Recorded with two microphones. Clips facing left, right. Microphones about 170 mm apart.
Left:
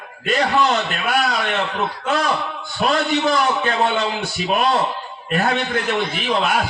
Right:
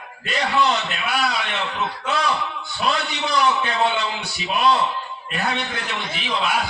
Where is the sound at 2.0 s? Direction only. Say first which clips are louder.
Left 2 dB; 45° left (ahead or behind).